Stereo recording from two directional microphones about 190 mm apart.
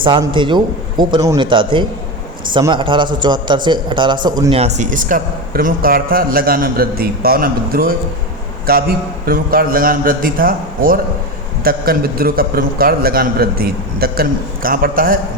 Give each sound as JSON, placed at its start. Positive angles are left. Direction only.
{"t": 0.0, "sound": "a man's voice", "side_deg": -25}
{"t": 4.4, "sound": "a man's voice", "side_deg": -35}